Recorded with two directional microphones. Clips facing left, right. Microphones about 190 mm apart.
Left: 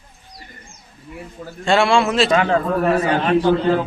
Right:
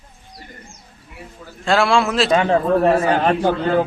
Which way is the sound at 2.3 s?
25° right (ahead or behind).